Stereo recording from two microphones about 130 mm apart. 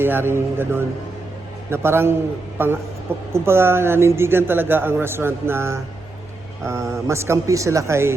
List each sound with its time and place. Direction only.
0.0 s speech: 15° right (ahead or behind)